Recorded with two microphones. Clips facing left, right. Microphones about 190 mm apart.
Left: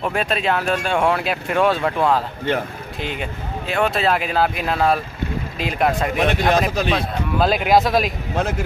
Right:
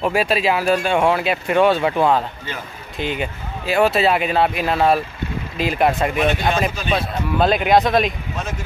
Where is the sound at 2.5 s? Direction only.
60° left (ahead or behind).